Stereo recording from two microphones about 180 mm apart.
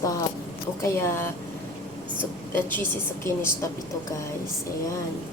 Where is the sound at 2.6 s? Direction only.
10° left (ahead or behind).